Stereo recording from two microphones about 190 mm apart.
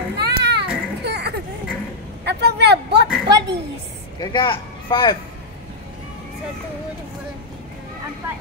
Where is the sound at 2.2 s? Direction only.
60° right (ahead or behind).